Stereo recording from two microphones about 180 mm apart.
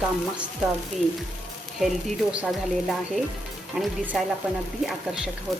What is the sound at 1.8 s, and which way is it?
Speech, 5° right (ahead or behind).